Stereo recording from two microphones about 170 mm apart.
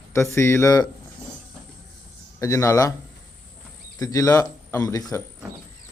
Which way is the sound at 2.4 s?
15° left (ahead or behind).